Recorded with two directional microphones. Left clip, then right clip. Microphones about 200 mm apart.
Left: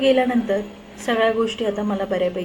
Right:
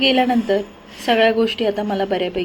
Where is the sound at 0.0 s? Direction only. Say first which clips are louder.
Right 1 dB; 20° right (ahead or behind).